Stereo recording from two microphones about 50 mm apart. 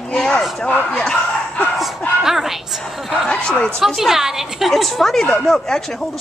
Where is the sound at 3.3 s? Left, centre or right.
Centre.